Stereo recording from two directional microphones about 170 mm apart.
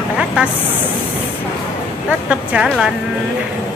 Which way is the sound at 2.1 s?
5° right (ahead or behind).